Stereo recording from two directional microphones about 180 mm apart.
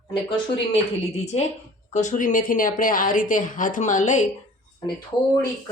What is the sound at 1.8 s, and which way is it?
A woman's voice, 40° left (ahead or behind).